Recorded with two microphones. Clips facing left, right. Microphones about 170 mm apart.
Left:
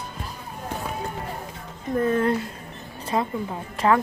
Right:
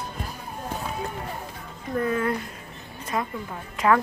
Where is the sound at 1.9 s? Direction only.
30° left (ahead or behind).